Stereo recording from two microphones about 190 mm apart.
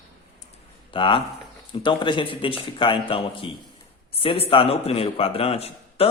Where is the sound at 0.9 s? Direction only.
25° left (ahead or behind).